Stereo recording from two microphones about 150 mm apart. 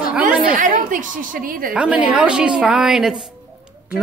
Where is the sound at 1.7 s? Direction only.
5° right (ahead or behind).